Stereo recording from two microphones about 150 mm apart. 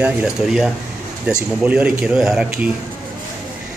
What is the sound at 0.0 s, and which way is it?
Speech, 5° right (ahead or behind).